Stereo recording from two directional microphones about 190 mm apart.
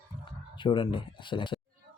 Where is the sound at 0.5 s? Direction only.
25° left (ahead or behind).